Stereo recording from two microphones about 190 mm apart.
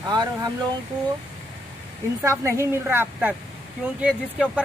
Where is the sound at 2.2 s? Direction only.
15° right (ahead or behind).